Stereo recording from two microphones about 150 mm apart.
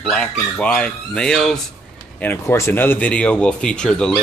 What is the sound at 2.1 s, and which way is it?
Speech, 15° left (ahead or behind).